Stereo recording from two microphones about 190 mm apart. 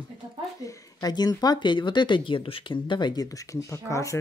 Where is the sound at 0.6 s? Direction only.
20° left (ahead or behind).